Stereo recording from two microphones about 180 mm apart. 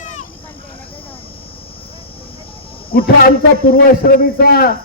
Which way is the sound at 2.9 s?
55° left (ahead or behind).